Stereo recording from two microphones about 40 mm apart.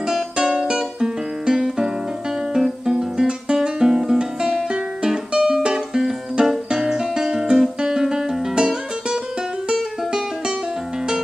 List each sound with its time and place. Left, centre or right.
0.0 s music: centre